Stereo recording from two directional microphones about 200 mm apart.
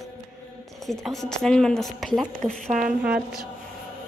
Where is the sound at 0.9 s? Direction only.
Centre (ahead or behind).